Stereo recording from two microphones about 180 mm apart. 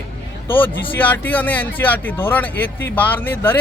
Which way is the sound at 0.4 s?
10° left (ahead or behind).